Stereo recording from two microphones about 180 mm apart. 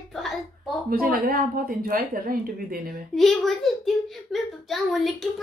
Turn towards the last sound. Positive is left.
turn(degrees=0)  # may be behind; listen again after turning